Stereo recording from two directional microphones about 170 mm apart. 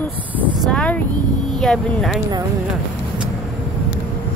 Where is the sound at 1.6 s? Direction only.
Centre (ahead or behind).